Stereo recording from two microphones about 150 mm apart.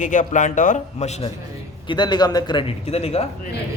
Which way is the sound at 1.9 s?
30° left (ahead or behind).